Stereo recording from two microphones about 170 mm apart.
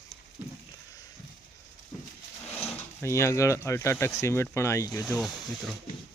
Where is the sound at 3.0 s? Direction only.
15° left (ahead or behind).